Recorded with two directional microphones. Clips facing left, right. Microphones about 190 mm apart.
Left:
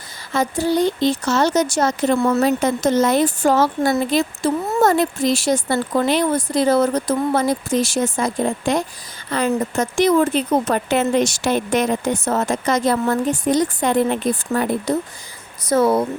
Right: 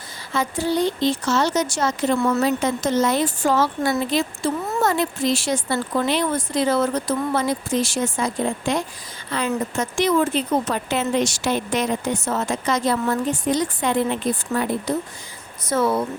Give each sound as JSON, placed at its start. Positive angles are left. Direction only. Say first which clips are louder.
{"t": 0.3, "sound": "a woman's voice", "louder": "left 3 dB", "side_deg": 40}
{"t": 15.7, "sound": "speech", "louder": "left 4 dB", "side_deg": 40}